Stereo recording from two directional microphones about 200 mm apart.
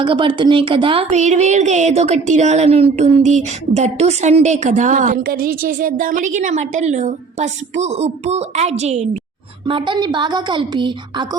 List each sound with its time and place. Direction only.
0.0 s a woman's voice: 25° right (ahead or behind)